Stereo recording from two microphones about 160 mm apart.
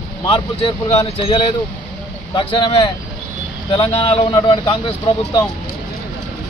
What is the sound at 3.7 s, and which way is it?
Speech, 30° left (ahead or behind).